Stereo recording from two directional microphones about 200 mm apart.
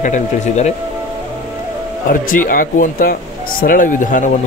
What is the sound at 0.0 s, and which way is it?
Speech, 35° left (ahead or behind).